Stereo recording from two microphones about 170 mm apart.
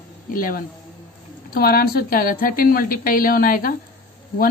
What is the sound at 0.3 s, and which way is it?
A woman's voice, 55° left (ahead or behind).